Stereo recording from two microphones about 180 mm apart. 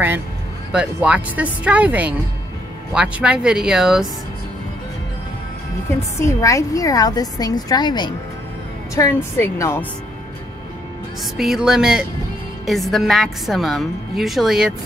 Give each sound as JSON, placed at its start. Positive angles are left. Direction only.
{"t": 0.7, "sound": "a woman's voice", "side_deg": -5}
{"t": 6.1, "sound": "a woman's voice", "side_deg": 15}
{"t": 11.3, "sound": "a woman's voice", "side_deg": 0}